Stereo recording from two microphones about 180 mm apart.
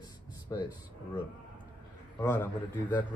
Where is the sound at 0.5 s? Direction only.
20° left (ahead or behind).